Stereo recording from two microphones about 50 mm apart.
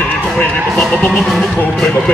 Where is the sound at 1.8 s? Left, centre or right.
Centre.